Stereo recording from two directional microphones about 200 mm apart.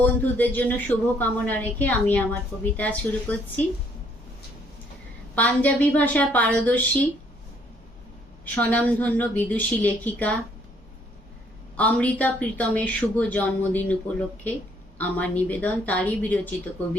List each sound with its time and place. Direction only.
0.0 s a woman's voice: 10° left (ahead or behind)
5.3 s a woman's voice: 5° left (ahead or behind)
8.5 s a woman's voice: 5° left (ahead or behind)
11.8 s a woman's voice: 5° left (ahead or behind)